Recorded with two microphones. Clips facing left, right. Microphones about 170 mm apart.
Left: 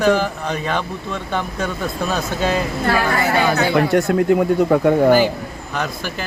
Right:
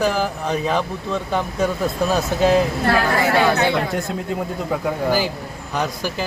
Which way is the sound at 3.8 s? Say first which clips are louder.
Left 8 dB; 65° left (ahead or behind).